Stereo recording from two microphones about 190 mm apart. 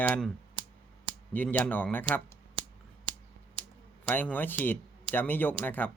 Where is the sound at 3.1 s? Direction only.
25° right (ahead or behind).